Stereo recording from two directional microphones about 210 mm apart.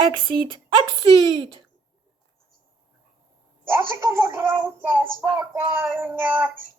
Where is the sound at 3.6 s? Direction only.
10° right (ahead or behind).